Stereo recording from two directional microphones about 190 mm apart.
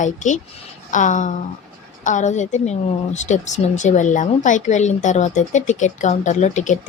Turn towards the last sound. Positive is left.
turn(degrees=40)  # may be behind; listen again after turning